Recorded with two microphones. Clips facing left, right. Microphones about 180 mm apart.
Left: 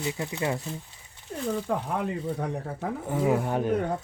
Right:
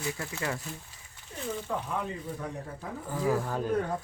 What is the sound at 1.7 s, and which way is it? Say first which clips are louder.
Speech: left 5 dB; 65° left (ahead or behind).